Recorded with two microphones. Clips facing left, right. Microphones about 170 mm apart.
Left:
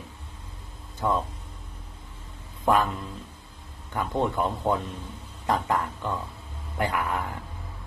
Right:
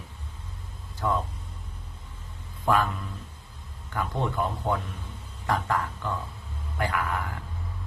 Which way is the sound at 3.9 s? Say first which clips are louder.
Left 1 dB; 20° left (ahead or behind).